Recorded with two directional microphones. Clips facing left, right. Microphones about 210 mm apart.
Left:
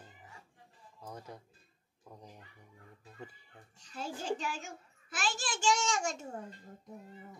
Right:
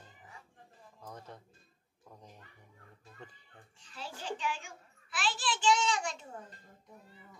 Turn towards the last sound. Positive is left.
turn(degrees=45)  # may be behind; listen again after turning